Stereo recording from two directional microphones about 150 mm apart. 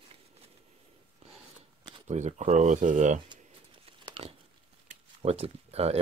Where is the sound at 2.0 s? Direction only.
50° right (ahead or behind).